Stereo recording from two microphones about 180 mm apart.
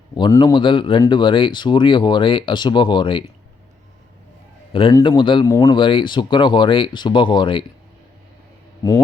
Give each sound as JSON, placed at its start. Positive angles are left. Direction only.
{"t": 0.1, "sound": "speech", "side_deg": 25}
{"t": 4.7, "sound": "a man's voice", "side_deg": 30}
{"t": 8.8, "sound": "speech", "side_deg": 20}